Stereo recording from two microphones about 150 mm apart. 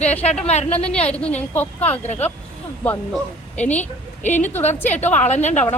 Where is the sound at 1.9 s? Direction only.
50° left (ahead or behind).